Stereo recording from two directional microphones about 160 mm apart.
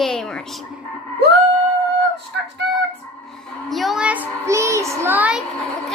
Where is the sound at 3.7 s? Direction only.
Centre (ahead or behind).